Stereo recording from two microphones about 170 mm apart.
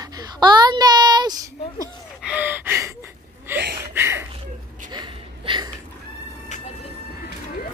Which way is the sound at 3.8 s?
15° right (ahead or behind).